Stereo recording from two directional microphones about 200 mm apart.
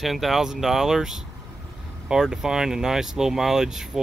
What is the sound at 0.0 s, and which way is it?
Speech, centre (ahead or behind).